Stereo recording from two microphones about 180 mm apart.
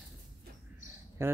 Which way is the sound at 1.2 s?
15° right (ahead or behind).